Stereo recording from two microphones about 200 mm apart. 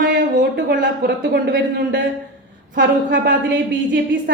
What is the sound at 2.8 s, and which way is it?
Speech, 65° right (ahead or behind).